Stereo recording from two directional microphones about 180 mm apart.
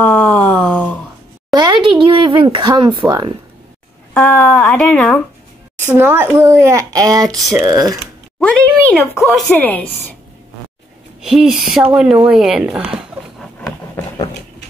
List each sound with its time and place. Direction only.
0.0 s a sound: 5° left (ahead or behind)
1.5 s a sound: 25° right (ahead or behind)
3.1 s speech: 25° right (ahead or behind)
4.1 s speech: centre (ahead or behind)
5.9 s a child's voice: 10° right (ahead or behind)
8.4 s speech: 5° left (ahead or behind)
11.1 s speech: centre (ahead or behind)